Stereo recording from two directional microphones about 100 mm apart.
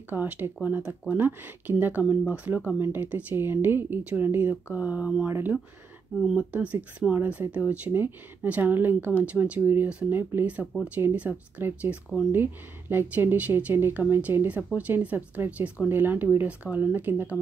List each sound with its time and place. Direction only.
0.1 s speech: 20° right (ahead or behind)